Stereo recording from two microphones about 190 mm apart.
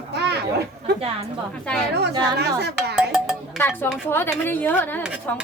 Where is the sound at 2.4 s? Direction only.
60° right (ahead or behind).